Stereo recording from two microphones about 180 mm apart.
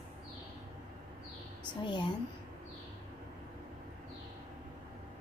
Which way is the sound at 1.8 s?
25° left (ahead or behind).